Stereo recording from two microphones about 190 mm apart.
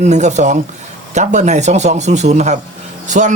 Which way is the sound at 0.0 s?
35° right (ahead or behind).